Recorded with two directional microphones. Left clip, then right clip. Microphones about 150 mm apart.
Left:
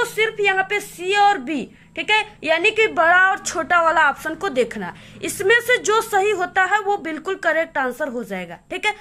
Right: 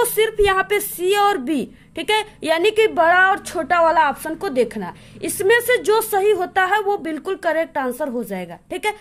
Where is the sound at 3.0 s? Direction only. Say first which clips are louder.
Even; 25° right (ahead or behind).